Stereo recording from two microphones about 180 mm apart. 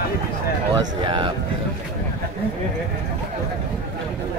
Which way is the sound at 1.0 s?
25° right (ahead or behind).